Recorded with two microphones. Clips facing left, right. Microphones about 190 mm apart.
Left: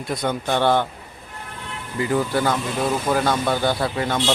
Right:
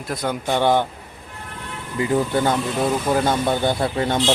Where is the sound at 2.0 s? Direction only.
20° right (ahead or behind).